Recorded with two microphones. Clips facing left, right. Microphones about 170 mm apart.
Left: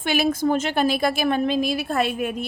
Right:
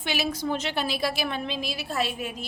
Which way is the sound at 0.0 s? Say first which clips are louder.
Left 8 dB; 50° left (ahead or behind).